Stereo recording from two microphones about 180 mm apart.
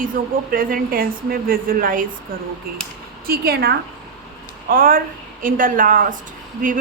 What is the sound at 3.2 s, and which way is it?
A woman's voice, 60° right (ahead or behind).